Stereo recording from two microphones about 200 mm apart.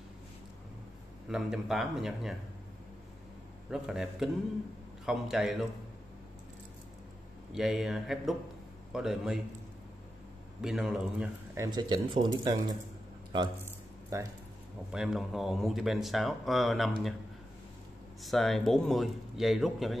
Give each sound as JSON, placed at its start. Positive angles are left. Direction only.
{"t": 1.3, "sound": "speech", "side_deg": 0}
{"t": 3.7, "sound": "speech", "side_deg": 0}
{"t": 7.5, "sound": "speech", "side_deg": 0}
{"t": 10.6, "sound": "speech", "side_deg": 0}
{"t": 11.5, "sound": "speech", "side_deg": -20}
{"t": 14.1, "sound": "speech", "side_deg": -15}
{"t": 14.9, "sound": "speech", "side_deg": 0}
{"t": 18.2, "sound": "speech", "side_deg": 0}